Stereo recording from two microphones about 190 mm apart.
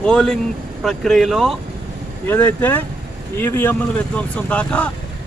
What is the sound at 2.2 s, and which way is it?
Speech, 10° left (ahead or behind).